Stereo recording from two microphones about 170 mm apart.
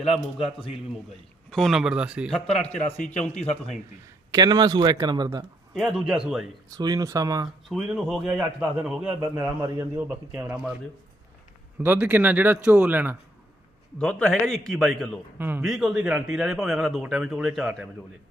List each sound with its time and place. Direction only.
0.1 s a man's voice: 35° left (ahead or behind)
1.5 s a man's voice: centre (ahead or behind)
2.6 s a man's voice: 40° left (ahead or behind)
4.3 s a man's voice: 20° right (ahead or behind)
5.7 s a man's voice: centre (ahead or behind)
6.7 s a man's voice: 25° right (ahead or behind)
7.7 s a man's voice: 5° right (ahead or behind)
9.2 s a man's voice: 15° right (ahead or behind)
11.8 s a man's voice: 10° right (ahead or behind)
14.0 s a man's voice: 5° left (ahead or behind)
15.4 s a man's voice: 10° right (ahead or behind)
15.6 s a man's voice: centre (ahead or behind)